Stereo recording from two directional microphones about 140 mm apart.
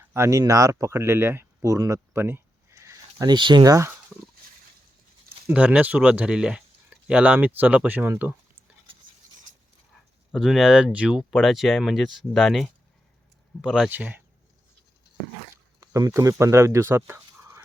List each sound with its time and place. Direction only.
0.0 s speech: 20° right (ahead or behind)
5.5 s speech: 10° right (ahead or behind)
10.3 s speech: centre (ahead or behind)
15.8 s speech: 25° right (ahead or behind)